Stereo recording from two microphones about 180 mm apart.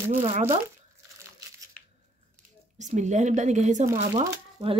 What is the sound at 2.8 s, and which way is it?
Speech, 40° right (ahead or behind).